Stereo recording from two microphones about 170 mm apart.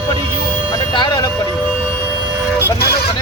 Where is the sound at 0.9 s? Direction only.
25° left (ahead or behind).